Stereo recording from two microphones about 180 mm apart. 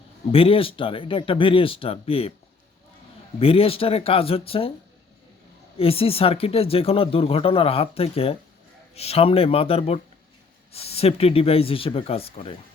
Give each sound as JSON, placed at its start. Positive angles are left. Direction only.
{"t": 0.3, "sound": "speech", "side_deg": 30}
{"t": 3.4, "sound": "speech", "side_deg": 30}
{"t": 5.7, "sound": "speech", "side_deg": 30}